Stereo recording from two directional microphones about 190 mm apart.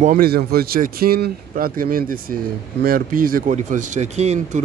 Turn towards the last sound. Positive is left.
turn(degrees=-35)  # may be behind; listen again after turning